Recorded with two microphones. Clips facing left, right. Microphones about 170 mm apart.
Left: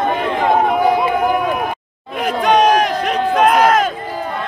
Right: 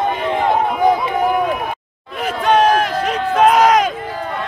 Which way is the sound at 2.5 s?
15° left (ahead or behind).